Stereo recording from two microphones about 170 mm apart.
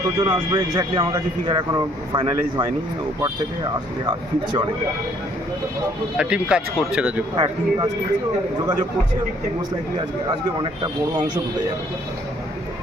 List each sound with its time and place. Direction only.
0.2 s speech: 25° right (ahead or behind)
4.1 s speech: 25° right (ahead or behind)
6.1 s speech: 5° right (ahead or behind)
7.3 s speech: 30° right (ahead or behind)